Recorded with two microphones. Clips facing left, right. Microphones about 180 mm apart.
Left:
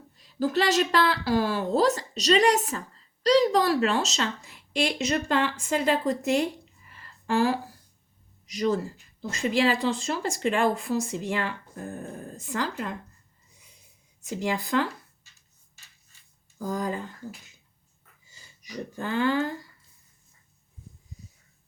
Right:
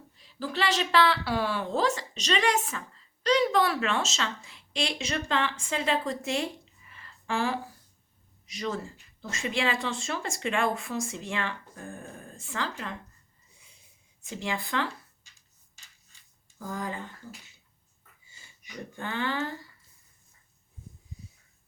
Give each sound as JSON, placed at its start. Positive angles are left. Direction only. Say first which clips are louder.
{"t": 0.2, "sound": "speech", "louder": "left 6 dB", "side_deg": 45}
{"t": 14.4, "sound": "speech", "louder": "left 5 dB", "side_deg": 40}
{"t": 16.6, "sound": "speech", "louder": "left 5 dB", "side_deg": 40}
{"t": 18.3, "sound": "speech", "louder": "left 6 dB", "side_deg": 40}